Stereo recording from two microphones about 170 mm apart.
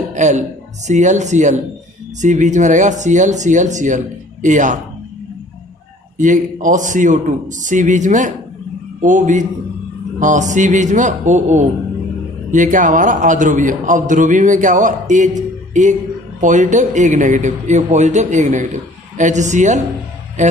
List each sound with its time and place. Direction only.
0.1 s a sound: 45° right (ahead or behind)
0.9 s a man's voice: 45° right (ahead or behind)
6.1 s a man's voice: 50° right (ahead or behind)